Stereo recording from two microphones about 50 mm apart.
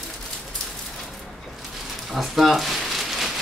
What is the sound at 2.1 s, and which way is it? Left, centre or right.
Speech, centre.